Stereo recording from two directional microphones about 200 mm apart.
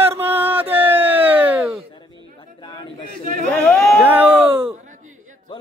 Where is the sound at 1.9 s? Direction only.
25° left (ahead or behind).